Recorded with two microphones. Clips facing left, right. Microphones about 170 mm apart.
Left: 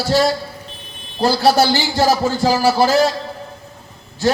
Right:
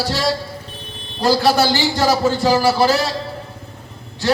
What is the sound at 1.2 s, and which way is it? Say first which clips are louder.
A man's voice: left 1 dB; 35° left (ahead or behind).